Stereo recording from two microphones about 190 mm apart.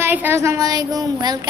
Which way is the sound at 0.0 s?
10° right (ahead or behind).